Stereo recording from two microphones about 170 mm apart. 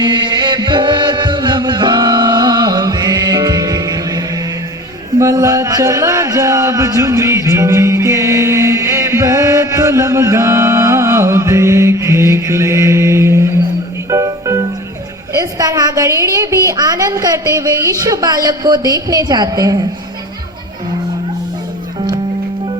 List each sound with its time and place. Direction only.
0.0 s chant: 25° right (ahead or behind)
5.2 s a sound: 20° right (ahead or behind)
14.1 s music: 20° right (ahead or behind)
15.4 s a woman's voice: 20° right (ahead or behind)